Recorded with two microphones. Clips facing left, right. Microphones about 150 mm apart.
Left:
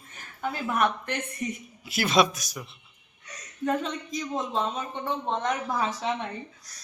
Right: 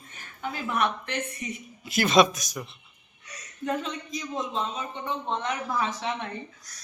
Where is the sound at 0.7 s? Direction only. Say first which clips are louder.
Left 1 dB; 45° left (ahead or behind).